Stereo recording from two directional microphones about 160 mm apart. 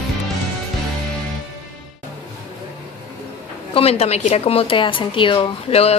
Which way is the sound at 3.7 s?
35° left (ahead or behind).